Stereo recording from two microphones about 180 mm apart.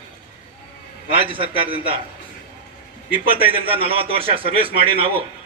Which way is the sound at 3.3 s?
30° right (ahead or behind).